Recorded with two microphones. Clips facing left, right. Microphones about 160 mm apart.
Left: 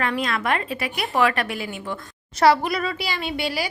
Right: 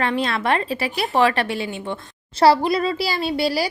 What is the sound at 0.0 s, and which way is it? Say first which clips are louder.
A woman's voice: right 3 dB; 30° right (ahead or behind).